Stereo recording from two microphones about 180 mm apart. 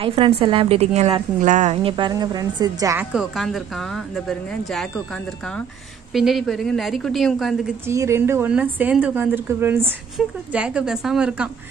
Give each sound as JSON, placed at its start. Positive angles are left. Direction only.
{"t": 0.0, "sound": "a woman's voice", "side_deg": -30}
{"t": 3.1, "sound": "a woman's voice", "side_deg": 0}
{"t": 6.1, "sound": "a woman's voice", "side_deg": 0}
{"t": 7.8, "sound": "a woman's voice", "side_deg": -15}